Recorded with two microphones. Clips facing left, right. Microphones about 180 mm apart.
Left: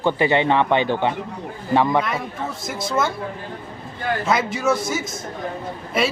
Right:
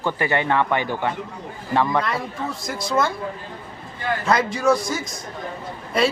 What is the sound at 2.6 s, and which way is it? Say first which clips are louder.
Speech: right 1 dB; centre (ahead or behind).